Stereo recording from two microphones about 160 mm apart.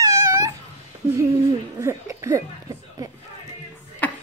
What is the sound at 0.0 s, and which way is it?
Cat, 20° right (ahead or behind).